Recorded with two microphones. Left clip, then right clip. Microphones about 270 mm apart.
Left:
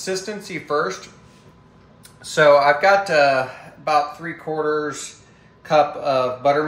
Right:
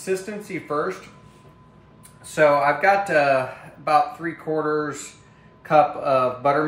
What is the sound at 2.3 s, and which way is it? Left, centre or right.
Speech, centre.